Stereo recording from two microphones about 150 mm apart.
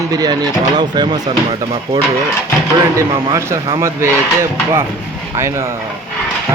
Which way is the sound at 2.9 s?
20° right (ahead or behind).